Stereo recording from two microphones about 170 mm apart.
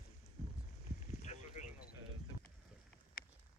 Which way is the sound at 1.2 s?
45° left (ahead or behind).